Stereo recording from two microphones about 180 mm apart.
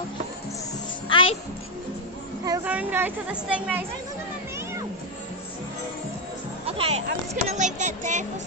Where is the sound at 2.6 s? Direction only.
10° right (ahead or behind).